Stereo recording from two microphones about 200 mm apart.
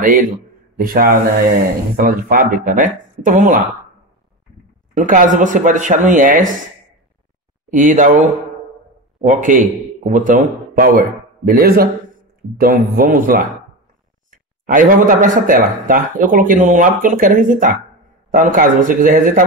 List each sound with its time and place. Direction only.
0.0 s speech: 40° right (ahead or behind)
4.9 s speech: 40° right (ahead or behind)
7.7 s a man's voice: 40° right (ahead or behind)